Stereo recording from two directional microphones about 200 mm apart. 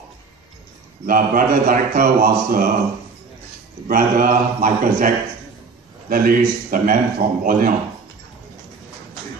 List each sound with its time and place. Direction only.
1.0 s a man's voice: 45° right (ahead or behind)
3.8 s a man's voice: 45° right (ahead or behind)